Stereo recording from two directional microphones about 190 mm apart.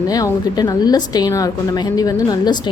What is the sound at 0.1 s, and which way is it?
A woman's voice, 20° left (ahead or behind).